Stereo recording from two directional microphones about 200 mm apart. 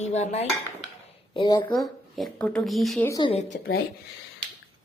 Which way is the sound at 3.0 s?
20° left (ahead or behind).